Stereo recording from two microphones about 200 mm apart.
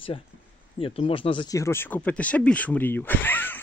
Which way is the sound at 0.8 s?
25° left (ahead or behind).